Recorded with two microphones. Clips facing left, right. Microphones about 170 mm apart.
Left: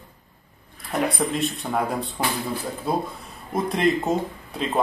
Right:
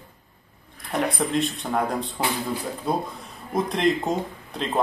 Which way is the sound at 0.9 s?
5° left (ahead or behind).